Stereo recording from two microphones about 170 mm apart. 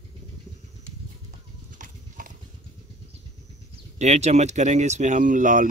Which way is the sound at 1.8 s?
55° right (ahead or behind).